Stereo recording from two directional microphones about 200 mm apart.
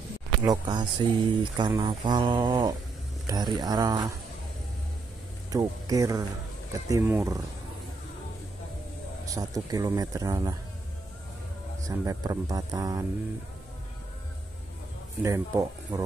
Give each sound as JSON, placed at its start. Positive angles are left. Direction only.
{"t": 0.5, "sound": "speech", "side_deg": -20}
{"t": 5.5, "sound": "speech", "side_deg": -15}
{"t": 9.2, "sound": "speech", "side_deg": -15}
{"t": 11.9, "sound": "speech", "side_deg": -15}
{"t": 15.2, "sound": "speech", "side_deg": -15}